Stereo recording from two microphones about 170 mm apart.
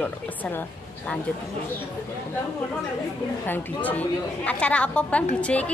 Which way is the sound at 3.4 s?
10° left (ahead or behind).